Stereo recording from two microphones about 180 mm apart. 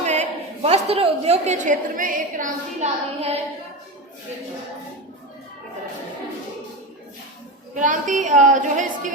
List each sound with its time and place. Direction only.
0.0 s a woman's voice: 40° right (ahead or behind)
2.4 s a woman's voice: 35° right (ahead or behind)
7.8 s a woman's voice: 45° right (ahead or behind)